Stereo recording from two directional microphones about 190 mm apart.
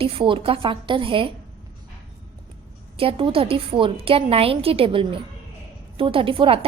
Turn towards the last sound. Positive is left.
turn(degrees=-30)  # may be behind; listen again after turning